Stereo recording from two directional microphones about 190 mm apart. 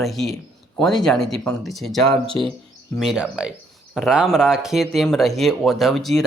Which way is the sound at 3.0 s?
5° right (ahead or behind).